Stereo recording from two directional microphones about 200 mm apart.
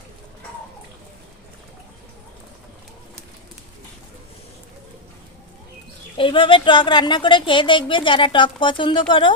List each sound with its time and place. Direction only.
6.1 s a woman's voice: 25° left (ahead or behind)